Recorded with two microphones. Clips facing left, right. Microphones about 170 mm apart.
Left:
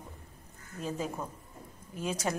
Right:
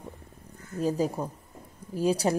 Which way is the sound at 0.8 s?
35° right (ahead or behind).